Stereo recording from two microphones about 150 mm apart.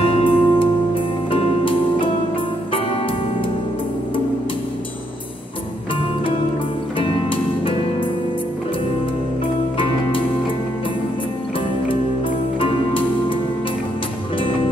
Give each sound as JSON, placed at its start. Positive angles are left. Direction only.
{"t": 0.0, "sound": "music", "side_deg": 35}
{"t": 7.0, "sound": "music", "side_deg": 35}
{"t": 12.5, "sound": "music", "side_deg": 35}